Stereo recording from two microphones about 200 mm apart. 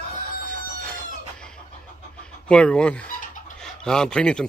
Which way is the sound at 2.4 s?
5° left (ahead or behind).